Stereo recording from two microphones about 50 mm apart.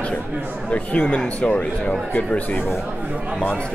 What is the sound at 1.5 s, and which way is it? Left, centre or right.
Speech, left.